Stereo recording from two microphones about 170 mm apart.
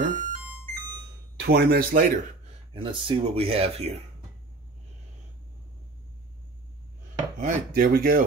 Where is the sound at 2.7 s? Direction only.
30° right (ahead or behind).